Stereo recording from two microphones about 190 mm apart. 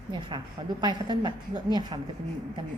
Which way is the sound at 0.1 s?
25° right (ahead or behind).